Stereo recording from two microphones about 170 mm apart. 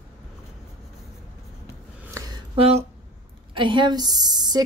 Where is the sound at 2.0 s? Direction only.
20° right (ahead or behind).